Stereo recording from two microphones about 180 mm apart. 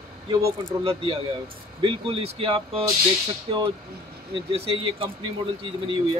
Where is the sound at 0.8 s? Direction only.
30° right (ahead or behind).